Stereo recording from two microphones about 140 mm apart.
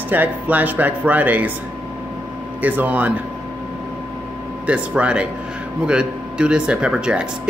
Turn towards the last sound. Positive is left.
turn(degrees=-5)  # may be behind; listen again after turning